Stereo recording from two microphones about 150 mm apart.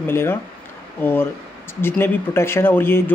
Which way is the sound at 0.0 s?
15° left (ahead or behind).